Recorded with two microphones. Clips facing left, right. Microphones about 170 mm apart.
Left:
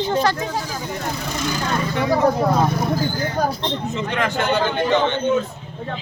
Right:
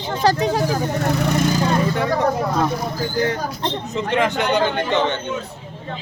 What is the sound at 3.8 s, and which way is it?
Speech, 35° right (ahead or behind).